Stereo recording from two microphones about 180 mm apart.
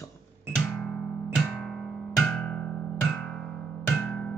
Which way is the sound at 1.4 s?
Centre (ahead or behind).